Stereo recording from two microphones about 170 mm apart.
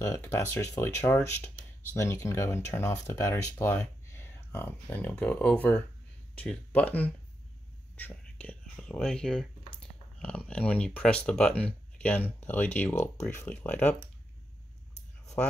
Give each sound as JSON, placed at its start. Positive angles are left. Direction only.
{"t": 0.0, "sound": "speech", "side_deg": 15}
{"t": 15.4, "sound": "speech", "side_deg": 10}